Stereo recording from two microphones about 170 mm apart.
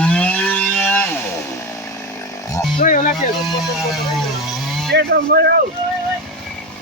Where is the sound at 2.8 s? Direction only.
50° left (ahead or behind).